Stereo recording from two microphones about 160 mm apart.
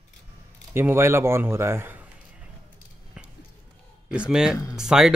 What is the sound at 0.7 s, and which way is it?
Speech, 15° right (ahead or behind).